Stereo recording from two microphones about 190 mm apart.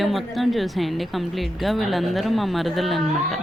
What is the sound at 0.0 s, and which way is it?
Speech, centre (ahead or behind).